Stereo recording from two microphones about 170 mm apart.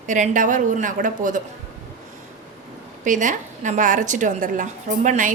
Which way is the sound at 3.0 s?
45° right (ahead or behind).